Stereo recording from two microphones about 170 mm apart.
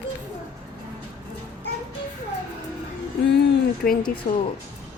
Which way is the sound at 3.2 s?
80° left.